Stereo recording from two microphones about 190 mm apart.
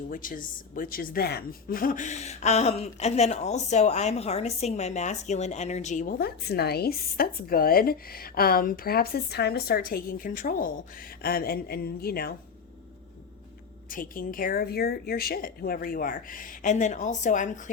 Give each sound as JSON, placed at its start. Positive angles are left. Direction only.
{"t": 0.1, "sound": "a woman's voice", "side_deg": 45}
{"t": 13.9, "sound": "a woman's voice", "side_deg": 45}